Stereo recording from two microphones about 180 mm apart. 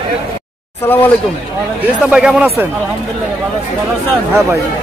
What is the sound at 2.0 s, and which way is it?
Speech, 5° right (ahead or behind).